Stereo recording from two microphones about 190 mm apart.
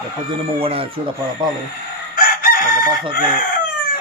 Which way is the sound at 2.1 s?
50° left (ahead or behind).